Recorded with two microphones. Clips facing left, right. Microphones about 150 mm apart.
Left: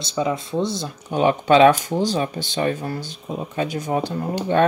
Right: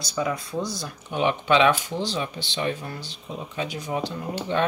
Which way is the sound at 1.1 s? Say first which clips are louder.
Left 5 dB; 45° left (ahead or behind).